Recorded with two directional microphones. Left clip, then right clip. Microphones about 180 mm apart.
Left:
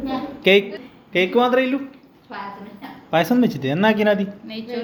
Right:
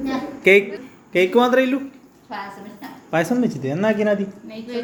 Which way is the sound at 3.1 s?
5° right (ahead or behind).